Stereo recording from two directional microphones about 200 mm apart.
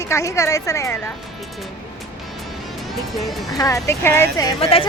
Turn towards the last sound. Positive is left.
turn(degrees=25)  # may be behind; listen again after turning